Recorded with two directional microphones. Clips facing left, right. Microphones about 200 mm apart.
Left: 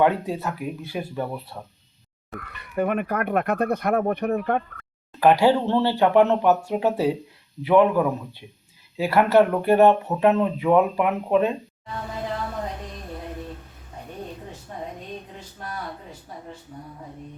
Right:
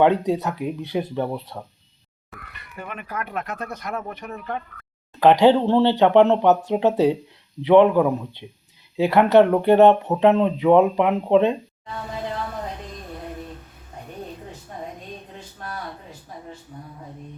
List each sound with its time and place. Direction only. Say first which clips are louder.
0.0 s speech: right 3 dB; 20° right (ahead or behind)
2.7 s speech: left 9 dB; 55° left (ahead or behind)
5.2 s speech: right 3 dB; 20° right (ahead or behind)